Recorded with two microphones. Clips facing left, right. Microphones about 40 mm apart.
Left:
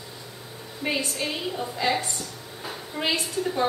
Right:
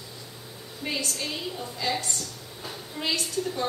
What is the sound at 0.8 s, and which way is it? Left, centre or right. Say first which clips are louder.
A woman's voice: left 4 dB; left.